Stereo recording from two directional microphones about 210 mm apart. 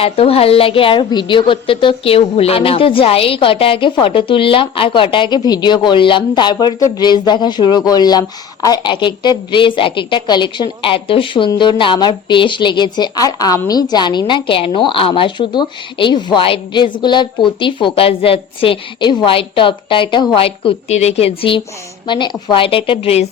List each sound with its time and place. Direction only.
0.0 s a woman's voice: 25° left (ahead or behind)